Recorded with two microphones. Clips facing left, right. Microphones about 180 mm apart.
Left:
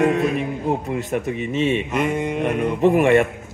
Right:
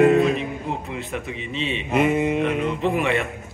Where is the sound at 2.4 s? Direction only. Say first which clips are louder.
Left 3 dB; 45° left (ahead or behind).